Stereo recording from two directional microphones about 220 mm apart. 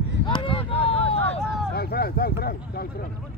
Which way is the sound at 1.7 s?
45° left (ahead or behind).